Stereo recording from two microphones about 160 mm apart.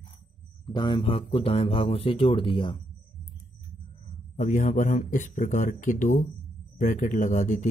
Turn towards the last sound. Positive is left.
turn(degrees=50)  # may be behind; listen again after turning